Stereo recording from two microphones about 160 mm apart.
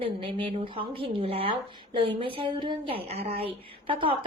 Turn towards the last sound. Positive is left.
turn(degrees=-35)  # may be behind; listen again after turning